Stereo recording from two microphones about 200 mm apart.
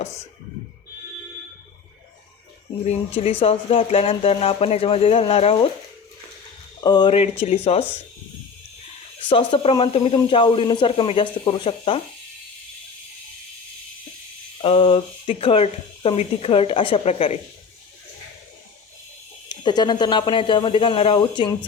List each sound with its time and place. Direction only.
3.4 s speech: 30° left (ahead or behind)
6.8 s speech: 20° left (ahead or behind)
9.3 s speech: 25° left (ahead or behind)
14.6 s speech: 25° left (ahead or behind)
19.5 s speech: 20° left (ahead or behind)